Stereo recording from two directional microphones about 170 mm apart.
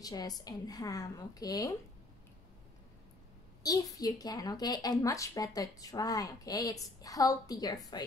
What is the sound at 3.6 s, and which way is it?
Speech, 20° left (ahead or behind).